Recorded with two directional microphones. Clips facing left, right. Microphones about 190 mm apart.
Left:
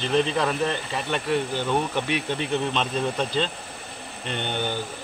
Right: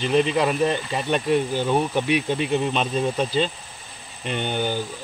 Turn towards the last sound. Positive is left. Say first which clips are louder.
# right 3 dB
turn(degrees=-10)  # may be behind; listen again after turning